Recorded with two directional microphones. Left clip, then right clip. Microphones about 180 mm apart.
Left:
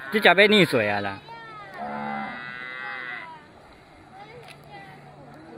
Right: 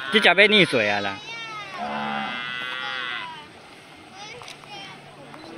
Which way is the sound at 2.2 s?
50° left (ahead or behind).